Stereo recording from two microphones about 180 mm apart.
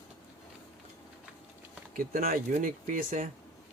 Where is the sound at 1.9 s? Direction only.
50° right (ahead or behind).